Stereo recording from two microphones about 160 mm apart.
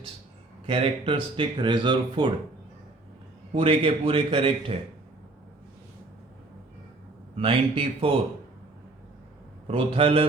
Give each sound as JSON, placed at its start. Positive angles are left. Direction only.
{"t": 0.7, "sound": "speech", "side_deg": -35}
{"t": 3.5, "sound": "a man's voice", "side_deg": -35}
{"t": 7.3, "sound": "a man's voice", "side_deg": -35}
{"t": 9.6, "sound": "a man's voice", "side_deg": -35}